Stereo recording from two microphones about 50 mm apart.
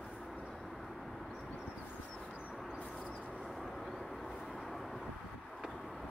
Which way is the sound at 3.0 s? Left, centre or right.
Left.